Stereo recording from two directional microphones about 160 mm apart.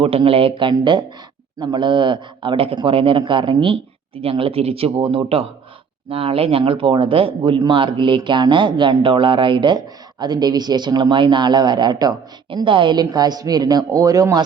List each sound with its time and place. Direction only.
0.0 s a man's voice: 35° right (ahead or behind)